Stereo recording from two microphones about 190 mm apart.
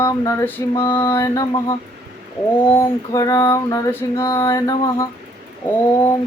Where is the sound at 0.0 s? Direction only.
15° left (ahead or behind).